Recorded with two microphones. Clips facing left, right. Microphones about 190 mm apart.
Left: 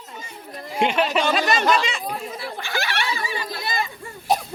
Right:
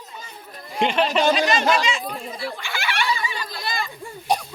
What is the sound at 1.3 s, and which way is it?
Speech, 55° left (ahead or behind).